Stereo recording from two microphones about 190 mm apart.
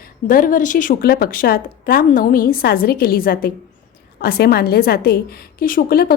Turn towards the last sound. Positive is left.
turn(degrees=55)  # may be behind; listen again after turning